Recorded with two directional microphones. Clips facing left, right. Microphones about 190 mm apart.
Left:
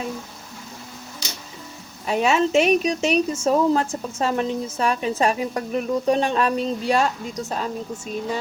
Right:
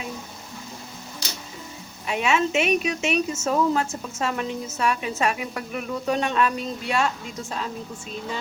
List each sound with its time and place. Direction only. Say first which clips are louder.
2.0 s speech: left 3 dB; 35° left (ahead or behind)